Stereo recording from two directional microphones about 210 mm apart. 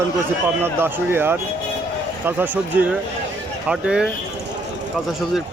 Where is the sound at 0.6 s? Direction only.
10° right (ahead or behind).